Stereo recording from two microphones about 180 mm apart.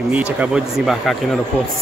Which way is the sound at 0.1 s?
5° right (ahead or behind).